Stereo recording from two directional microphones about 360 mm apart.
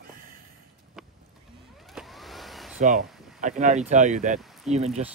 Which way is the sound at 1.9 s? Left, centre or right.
Centre.